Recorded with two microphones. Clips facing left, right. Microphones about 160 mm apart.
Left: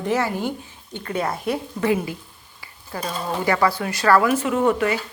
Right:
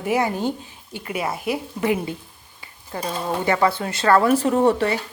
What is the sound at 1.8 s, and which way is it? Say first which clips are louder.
Speech: left 1 dB; 20° right (ahead or behind).